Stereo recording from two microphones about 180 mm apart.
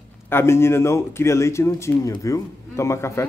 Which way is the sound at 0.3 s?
15° left (ahead or behind).